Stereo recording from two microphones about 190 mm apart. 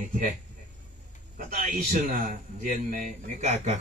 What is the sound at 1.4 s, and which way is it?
A man's voice, 45° right (ahead or behind).